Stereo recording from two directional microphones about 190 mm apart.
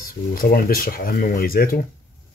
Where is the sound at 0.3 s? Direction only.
50° left (ahead or behind).